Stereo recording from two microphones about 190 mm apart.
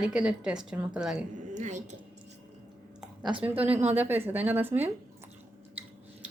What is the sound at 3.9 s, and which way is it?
Speech, 10° right (ahead or behind).